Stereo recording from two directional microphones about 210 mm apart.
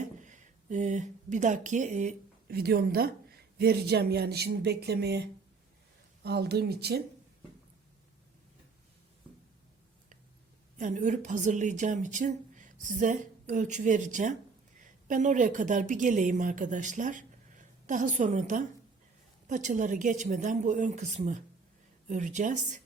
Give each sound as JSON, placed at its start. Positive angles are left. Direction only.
{"t": 0.2, "sound": "speech", "side_deg": -35}
{"t": 6.2, "sound": "speech", "side_deg": -50}
{"t": 10.8, "sound": "a woman's voice", "side_deg": -35}